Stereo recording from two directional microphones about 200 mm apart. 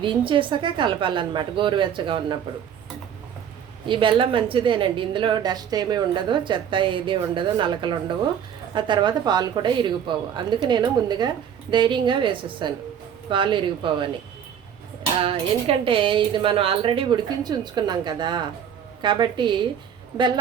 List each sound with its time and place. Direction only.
0.0 s a woman's voice: 25° right (ahead or behind)
3.8 s a woman's voice: 25° right (ahead or behind)
15.2 s a woman's voice: 30° right (ahead or behind)